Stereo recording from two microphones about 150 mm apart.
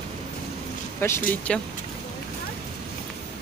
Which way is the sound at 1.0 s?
15° left (ahead or behind).